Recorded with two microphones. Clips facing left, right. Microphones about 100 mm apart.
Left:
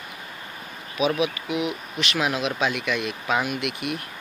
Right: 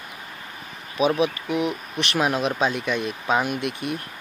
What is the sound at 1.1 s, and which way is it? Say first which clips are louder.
Speech: right 2 dB; 10° left (ahead or behind).